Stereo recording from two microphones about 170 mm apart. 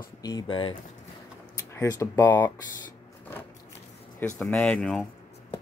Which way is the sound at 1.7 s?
15° left (ahead or behind).